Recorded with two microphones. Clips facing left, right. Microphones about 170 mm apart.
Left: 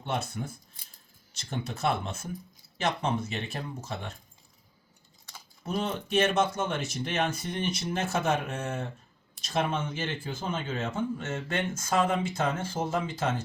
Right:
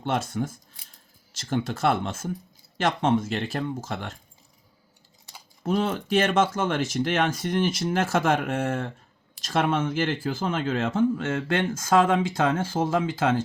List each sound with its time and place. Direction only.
0.0 s speech: 90° right
5.6 s speech: 90° right